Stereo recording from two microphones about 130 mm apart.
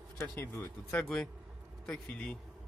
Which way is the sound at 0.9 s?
5° left (ahead or behind).